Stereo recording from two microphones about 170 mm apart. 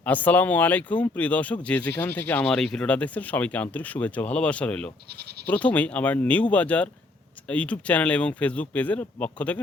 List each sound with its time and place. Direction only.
0.0 s speech: 10° left (ahead or behind)